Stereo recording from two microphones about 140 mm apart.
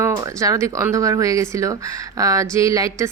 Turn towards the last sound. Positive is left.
turn(degrees=-25)  # may be behind; listen again after turning